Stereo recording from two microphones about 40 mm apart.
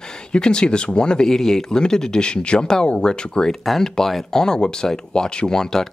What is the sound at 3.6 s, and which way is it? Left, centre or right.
Speech, centre.